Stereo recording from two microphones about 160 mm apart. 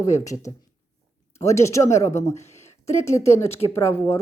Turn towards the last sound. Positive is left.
turn(degrees=15)  # may be behind; listen again after turning